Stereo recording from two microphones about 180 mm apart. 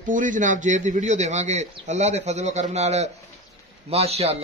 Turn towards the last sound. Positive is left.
turn(degrees=-35)  # may be behind; listen again after turning